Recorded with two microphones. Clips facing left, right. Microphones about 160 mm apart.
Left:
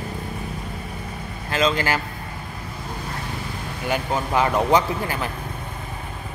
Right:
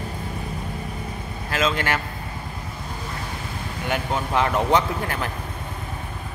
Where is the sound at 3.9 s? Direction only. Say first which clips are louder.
Left 1 dB; 5° left (ahead or behind).